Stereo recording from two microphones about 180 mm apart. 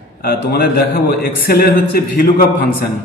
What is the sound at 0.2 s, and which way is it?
A man's voice, 55° left (ahead or behind).